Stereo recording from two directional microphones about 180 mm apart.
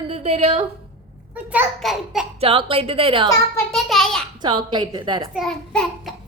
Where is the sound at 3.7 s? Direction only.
Centre (ahead or behind).